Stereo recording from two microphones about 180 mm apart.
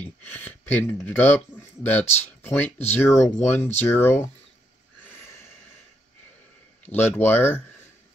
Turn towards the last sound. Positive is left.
turn(degrees=10)  # may be behind; listen again after turning